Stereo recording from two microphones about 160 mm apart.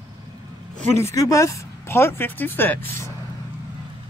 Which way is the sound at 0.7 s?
45° right (ahead or behind).